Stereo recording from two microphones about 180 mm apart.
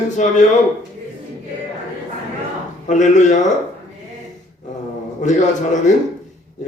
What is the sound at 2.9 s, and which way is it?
Speech, 40° left (ahead or behind).